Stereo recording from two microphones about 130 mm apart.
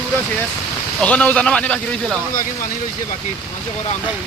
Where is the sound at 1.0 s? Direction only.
10° left (ahead or behind).